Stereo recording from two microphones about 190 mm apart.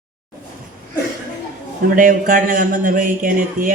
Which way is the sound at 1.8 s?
45° right (ahead or behind).